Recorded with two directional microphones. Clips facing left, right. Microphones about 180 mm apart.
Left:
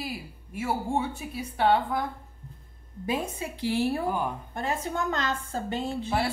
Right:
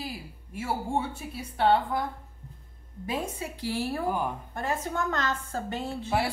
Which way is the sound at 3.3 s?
20° left (ahead or behind).